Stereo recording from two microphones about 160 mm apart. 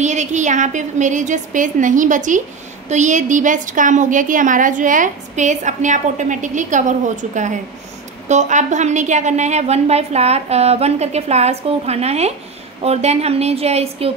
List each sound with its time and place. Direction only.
0.0 s a woman's voice: 50° right (ahead or behind)